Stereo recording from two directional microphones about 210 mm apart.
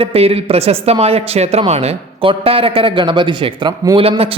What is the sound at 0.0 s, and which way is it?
Speech, 30° right (ahead or behind).